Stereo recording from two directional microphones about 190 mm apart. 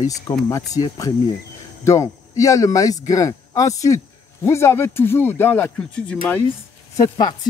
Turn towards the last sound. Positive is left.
turn(degrees=20)  # may be behind; listen again after turning